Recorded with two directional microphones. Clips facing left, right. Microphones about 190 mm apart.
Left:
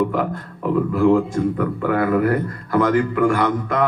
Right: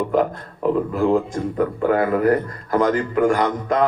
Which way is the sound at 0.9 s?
25° right (ahead or behind).